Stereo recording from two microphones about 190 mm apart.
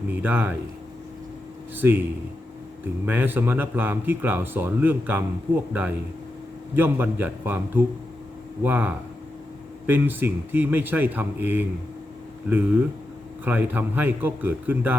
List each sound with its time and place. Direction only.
0.1 s speech: 10° right (ahead or behind)
1.7 s speech: 10° right (ahead or behind)
6.7 s speech: 10° right (ahead or behind)